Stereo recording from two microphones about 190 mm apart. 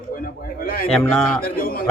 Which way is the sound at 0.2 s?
50° left (ahead or behind).